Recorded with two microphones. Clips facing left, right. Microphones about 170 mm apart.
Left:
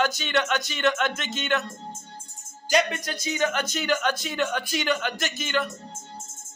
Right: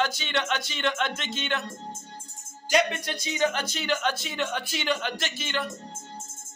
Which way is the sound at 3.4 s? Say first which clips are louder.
Even; 30° right (ahead or behind).